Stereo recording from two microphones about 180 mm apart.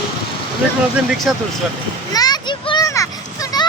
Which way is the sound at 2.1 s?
20° left (ahead or behind).